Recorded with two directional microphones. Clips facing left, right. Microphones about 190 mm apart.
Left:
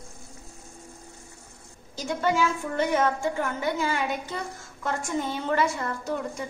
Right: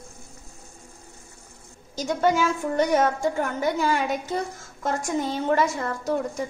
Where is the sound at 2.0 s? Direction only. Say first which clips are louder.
Right 3 dB; 40° right (ahead or behind).